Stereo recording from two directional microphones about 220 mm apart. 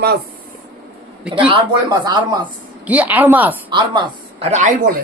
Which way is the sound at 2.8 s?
5° right (ahead or behind).